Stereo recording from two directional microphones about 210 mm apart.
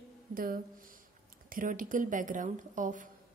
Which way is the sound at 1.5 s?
40° right (ahead or behind).